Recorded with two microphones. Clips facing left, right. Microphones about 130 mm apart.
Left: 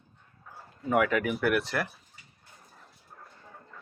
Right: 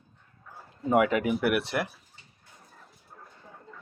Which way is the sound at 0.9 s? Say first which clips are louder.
Right 2 dB; 25° right (ahead or behind).